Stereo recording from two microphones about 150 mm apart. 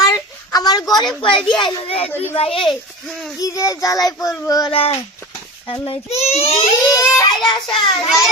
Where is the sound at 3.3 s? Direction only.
25° left (ahead or behind).